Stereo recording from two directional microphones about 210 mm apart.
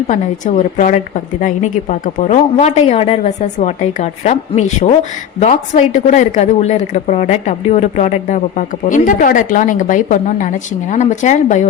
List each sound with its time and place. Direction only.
0.1 s a woman's voice: 35° left (ahead or behind)